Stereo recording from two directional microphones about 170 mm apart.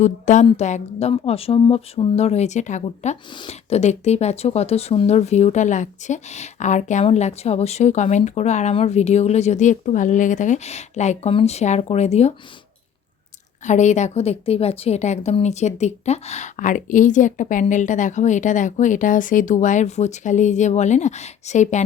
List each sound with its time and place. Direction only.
0.0 s a woman's voice: 45° left (ahead or behind)
13.7 s a woman's voice: 45° left (ahead or behind)